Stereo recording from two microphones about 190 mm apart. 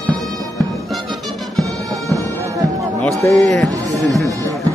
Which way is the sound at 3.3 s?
Centre (ahead or behind).